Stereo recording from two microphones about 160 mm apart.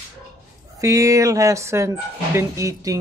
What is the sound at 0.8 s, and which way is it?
Speech, 20° right (ahead or behind).